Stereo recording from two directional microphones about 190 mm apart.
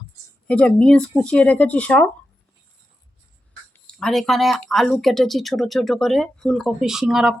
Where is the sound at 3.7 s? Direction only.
5° left (ahead or behind).